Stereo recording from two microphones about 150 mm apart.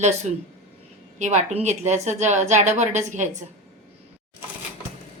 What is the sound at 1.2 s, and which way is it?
A woman's voice, 50° right (ahead or behind).